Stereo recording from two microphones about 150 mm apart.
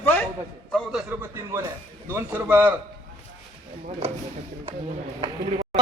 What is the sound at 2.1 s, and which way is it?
Speech, 15° right (ahead or behind).